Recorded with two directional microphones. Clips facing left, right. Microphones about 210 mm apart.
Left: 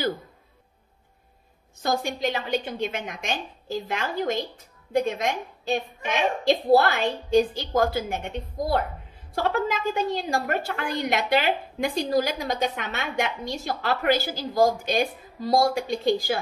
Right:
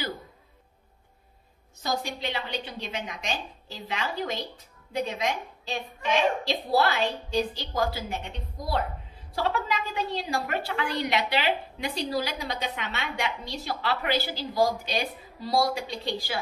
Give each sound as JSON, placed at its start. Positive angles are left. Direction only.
{"t": 1.8, "sound": "a woman's voice", "side_deg": 50}